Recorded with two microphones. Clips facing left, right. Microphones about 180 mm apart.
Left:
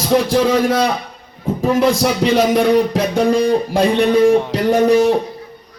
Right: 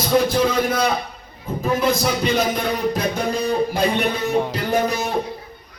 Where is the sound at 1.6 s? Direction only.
85° left.